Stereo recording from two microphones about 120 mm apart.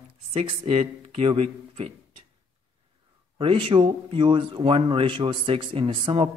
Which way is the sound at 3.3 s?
45° right (ahead or behind).